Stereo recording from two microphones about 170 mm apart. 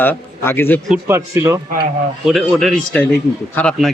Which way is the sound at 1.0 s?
15° right (ahead or behind).